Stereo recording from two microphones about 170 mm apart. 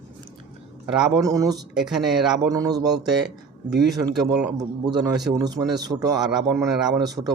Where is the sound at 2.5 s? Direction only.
20° right (ahead or behind).